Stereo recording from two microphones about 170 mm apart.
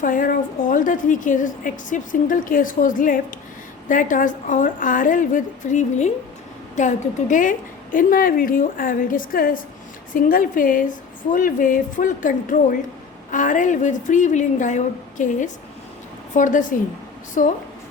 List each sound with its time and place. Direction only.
0.0 s a woman's voice: 55° left (ahead or behind)